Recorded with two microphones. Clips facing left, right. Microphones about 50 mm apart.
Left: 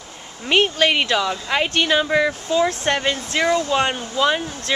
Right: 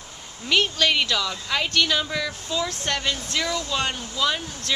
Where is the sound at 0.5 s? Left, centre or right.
Left.